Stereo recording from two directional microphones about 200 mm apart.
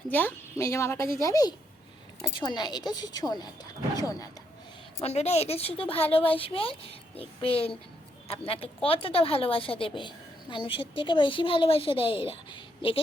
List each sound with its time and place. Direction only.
0.1 s speech: 10° left (ahead or behind)
5.0 s speech: 30° left (ahead or behind)